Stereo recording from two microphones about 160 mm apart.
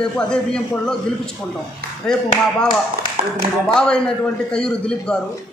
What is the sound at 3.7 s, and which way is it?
A man's voice, 5° left (ahead or behind).